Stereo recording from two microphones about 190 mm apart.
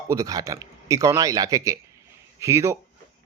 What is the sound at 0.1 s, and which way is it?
A man's voice, 20° right (ahead or behind).